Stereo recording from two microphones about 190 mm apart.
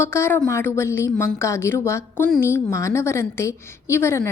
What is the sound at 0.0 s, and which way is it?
A woman's voice, 15° left (ahead or behind).